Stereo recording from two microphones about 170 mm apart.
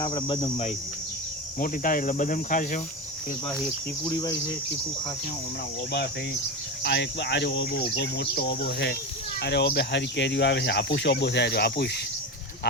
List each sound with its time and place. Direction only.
0.0 s cricket: 25° left (ahead or behind)
1.5 s cricket: 55° left (ahead or behind)
3.5 s cricket: 5° left (ahead or behind)
6.8 s speech: 90° left; by 11.9 s 75° left (ahead or behind)